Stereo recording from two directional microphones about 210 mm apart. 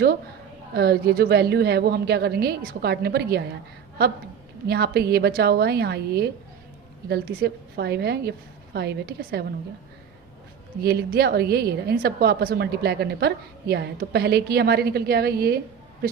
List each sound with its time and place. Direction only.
0.7 s a woman's voice: 50° right (ahead or behind)
4.6 s a woman's voice: 50° right (ahead or behind)
10.8 s a woman's voice: 50° right (ahead or behind)